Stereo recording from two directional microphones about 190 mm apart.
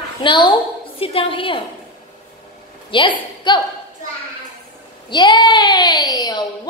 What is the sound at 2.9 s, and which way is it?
Speech, 25° left (ahead or behind).